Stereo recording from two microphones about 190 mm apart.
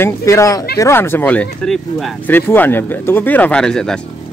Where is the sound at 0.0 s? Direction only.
15° left (ahead or behind).